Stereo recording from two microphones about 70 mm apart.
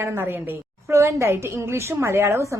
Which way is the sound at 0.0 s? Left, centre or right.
Right.